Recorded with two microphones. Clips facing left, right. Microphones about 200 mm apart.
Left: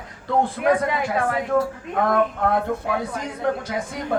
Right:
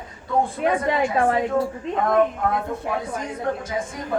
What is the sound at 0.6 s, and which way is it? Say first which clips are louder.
Speech: left 6 dB; 30° right (ahead or behind).